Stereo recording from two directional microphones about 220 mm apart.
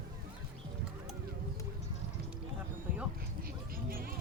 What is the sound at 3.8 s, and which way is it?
Music, 40° right (ahead or behind).